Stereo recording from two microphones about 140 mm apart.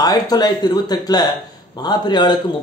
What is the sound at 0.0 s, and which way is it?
A man's voice, 25° left (ahead or behind).